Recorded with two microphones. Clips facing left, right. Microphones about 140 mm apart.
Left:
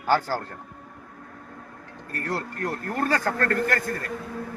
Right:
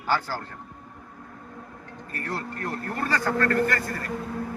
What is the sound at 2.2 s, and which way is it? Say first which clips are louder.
A man's voice: left 3 dB; 40° left (ahead or behind).